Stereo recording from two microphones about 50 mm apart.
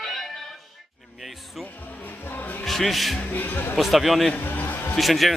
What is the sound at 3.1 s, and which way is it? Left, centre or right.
Speech, left.